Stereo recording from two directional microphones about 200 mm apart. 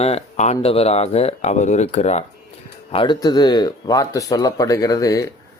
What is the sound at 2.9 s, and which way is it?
Speech, 25° left (ahead or behind).